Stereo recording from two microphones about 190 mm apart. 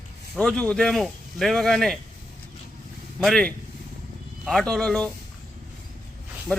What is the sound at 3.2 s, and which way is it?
Speech, centre (ahead or behind).